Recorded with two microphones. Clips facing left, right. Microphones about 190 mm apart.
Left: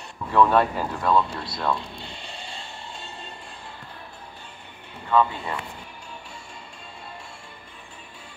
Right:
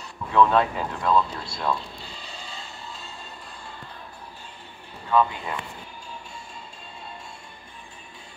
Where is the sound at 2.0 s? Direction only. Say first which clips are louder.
Left 2 dB; 65° left (ahead or behind).